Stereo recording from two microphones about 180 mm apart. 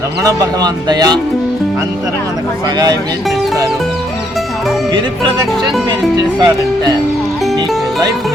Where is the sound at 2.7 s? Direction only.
20° right (ahead or behind).